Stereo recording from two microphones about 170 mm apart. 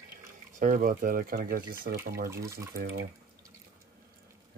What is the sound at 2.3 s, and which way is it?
Speech, 15° right (ahead or behind).